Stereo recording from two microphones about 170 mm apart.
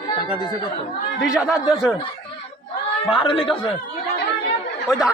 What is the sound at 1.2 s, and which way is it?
Speech, 5° right (ahead or behind).